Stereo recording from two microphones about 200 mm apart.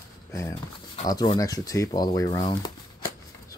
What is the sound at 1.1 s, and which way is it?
Speech, 20° left (ahead or behind).